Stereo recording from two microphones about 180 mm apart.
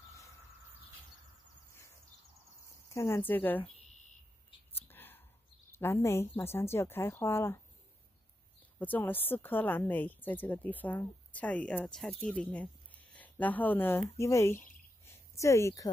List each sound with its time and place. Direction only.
2.9 s speech: 15° left (ahead or behind)
4.7 s whispering: 10° left (ahead or behind)
5.7 s speech: 15° left (ahead or behind)
8.7 s speech: 10° left (ahead or behind)
15.0 s a sound: 15° left (ahead or behind)